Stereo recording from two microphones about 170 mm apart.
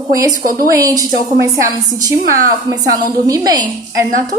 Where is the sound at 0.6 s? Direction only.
20° right (ahead or behind).